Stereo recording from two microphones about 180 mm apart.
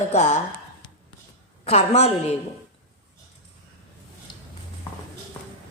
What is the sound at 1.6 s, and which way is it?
Speech, 35° left (ahead or behind).